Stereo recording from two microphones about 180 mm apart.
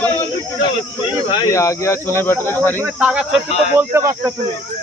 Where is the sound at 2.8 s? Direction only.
5° right (ahead or behind).